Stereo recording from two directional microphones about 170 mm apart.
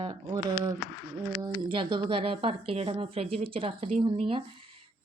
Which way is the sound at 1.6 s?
30° right (ahead or behind).